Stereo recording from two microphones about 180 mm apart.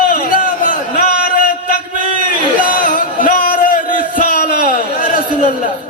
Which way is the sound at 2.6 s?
45° left (ahead or behind).